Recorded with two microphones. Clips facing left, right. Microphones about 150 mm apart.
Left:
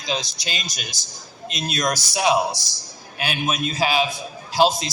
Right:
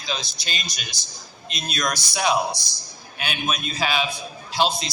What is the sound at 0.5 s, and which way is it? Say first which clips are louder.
A man's voice: left 2 dB; 40° left (ahead or behind).